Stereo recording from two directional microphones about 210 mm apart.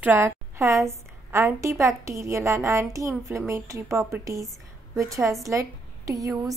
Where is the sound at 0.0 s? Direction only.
10° right (ahead or behind).